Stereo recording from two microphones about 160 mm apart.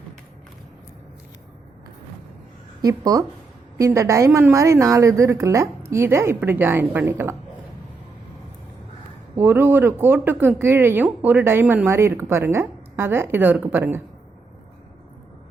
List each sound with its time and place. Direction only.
2.8 s speech: 20° right (ahead or behind)
9.3 s speech: 15° right (ahead or behind)